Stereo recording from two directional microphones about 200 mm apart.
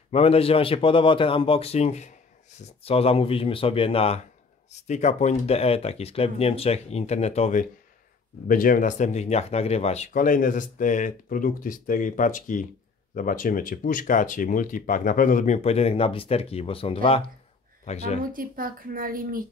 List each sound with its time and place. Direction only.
0.1 s a man's voice: 30° left (ahead or behind)
18.3 s speech: 45° right (ahead or behind)